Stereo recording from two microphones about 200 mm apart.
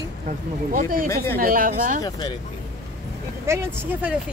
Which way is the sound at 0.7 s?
45° right (ahead or behind).